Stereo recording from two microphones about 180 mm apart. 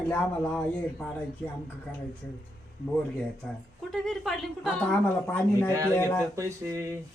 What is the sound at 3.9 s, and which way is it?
Speech, centre (ahead or behind).